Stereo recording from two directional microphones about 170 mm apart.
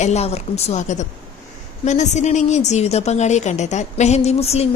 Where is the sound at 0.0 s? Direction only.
40° left (ahead or behind).